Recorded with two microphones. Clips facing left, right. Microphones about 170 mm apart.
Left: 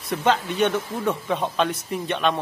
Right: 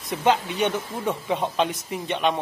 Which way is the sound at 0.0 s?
15° right (ahead or behind).